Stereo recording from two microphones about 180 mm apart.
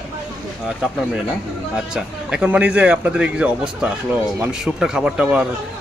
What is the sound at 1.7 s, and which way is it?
A man's voice, 5° right (ahead or behind).